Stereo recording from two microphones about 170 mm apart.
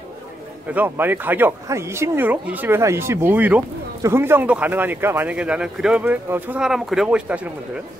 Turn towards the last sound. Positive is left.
turn(degrees=-10)  # may be behind; listen again after turning